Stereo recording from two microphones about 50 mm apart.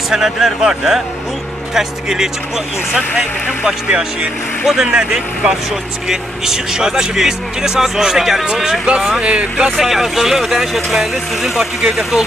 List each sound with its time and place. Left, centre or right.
0.1 s speech: centre
3.6 s speech: right
4.6 s speech: centre
9.2 s speech: right
9.8 s speech: centre